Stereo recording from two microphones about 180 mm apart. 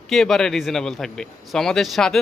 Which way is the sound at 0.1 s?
Centre (ahead or behind).